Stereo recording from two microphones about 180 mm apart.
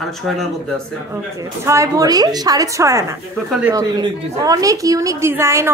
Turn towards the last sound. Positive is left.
turn(degrees=-15)  # may be behind; listen again after turning